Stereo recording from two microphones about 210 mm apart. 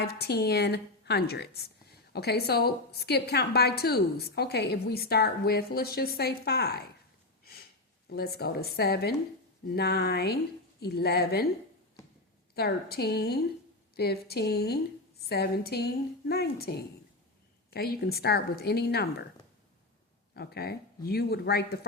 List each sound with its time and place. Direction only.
0.0 s a woman's voice: 50° left (ahead or behind)
8.1 s a woman's voice: 50° left (ahead or behind)
12.5 s a woman's voice: 50° left (ahead or behind)
20.3 s a woman's voice: 50° left (ahead or behind)